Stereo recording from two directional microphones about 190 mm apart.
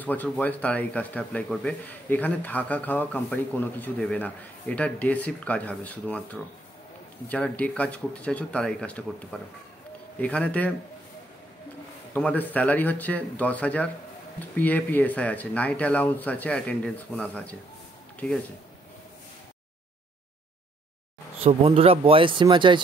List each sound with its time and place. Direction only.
0.0 s speech: 10° left (ahead or behind)
7.2 s speech: 5° left (ahead or behind)
12.1 s speech: 10° left (ahead or behind)
21.4 s speech: 30° right (ahead or behind)